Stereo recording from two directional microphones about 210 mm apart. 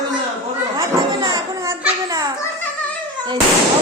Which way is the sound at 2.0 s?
15° right (ahead or behind).